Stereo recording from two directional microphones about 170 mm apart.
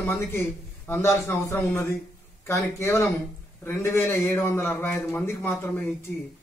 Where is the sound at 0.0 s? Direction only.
15° left (ahead or behind).